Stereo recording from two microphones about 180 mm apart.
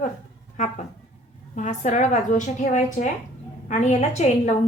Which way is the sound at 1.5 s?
40° left (ahead or behind).